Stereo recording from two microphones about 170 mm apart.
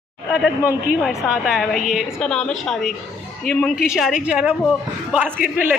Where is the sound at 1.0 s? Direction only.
Centre (ahead or behind).